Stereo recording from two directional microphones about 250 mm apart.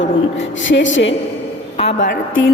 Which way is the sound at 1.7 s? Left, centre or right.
Left.